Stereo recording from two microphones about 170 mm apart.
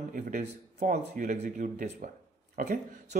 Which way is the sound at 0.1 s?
50° right (ahead or behind).